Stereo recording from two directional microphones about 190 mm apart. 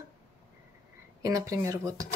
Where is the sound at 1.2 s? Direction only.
15° right (ahead or behind).